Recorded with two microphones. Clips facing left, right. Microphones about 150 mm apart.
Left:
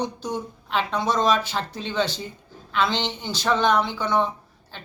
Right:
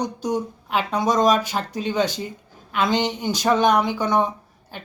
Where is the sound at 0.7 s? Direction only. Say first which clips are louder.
Right 3 dB; 10° right (ahead or behind).